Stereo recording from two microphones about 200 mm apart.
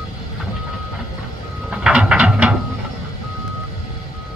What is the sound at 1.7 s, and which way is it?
Ratchet, 5° right (ahead or behind).